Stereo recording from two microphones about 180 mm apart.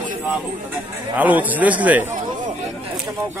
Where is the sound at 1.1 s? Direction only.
10° right (ahead or behind).